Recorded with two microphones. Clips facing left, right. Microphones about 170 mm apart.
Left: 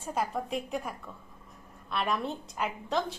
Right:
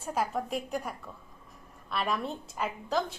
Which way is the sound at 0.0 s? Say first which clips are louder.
Right 1 dB; centre (ahead or behind).